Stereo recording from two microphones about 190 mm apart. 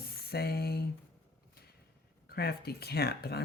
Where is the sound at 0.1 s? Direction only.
55° left (ahead or behind).